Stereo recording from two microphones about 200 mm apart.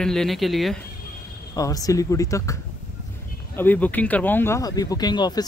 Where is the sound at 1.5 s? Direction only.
15° left (ahead or behind).